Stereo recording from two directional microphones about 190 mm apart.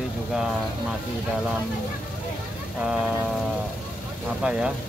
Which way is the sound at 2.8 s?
5° right (ahead or behind).